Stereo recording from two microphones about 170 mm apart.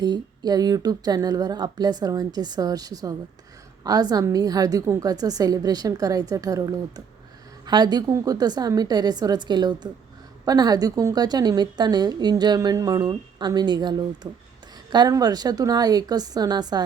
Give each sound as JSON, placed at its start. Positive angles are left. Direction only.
{"t": 0.0, "sound": "a woman's voice", "side_deg": -25}